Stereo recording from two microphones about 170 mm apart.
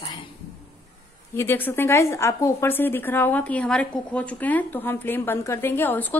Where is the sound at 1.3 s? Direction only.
15° left (ahead or behind).